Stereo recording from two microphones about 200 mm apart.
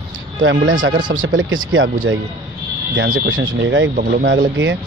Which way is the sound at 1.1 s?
45° right (ahead or behind).